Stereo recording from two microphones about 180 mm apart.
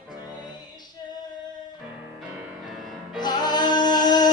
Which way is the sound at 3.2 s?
25° left (ahead or behind).